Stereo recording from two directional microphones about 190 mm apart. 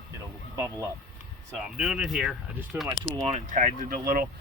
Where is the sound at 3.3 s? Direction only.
40° right (ahead or behind).